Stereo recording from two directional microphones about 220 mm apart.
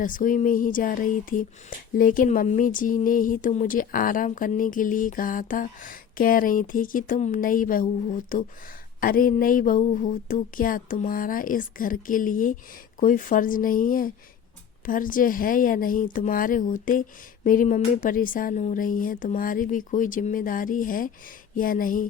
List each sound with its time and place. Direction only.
0.0 s speech: 35° left (ahead or behind)